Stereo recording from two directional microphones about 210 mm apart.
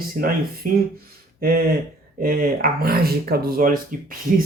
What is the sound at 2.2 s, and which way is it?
Speech, 45° right (ahead or behind).